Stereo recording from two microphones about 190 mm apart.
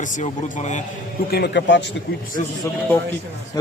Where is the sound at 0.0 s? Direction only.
40° left (ahead or behind).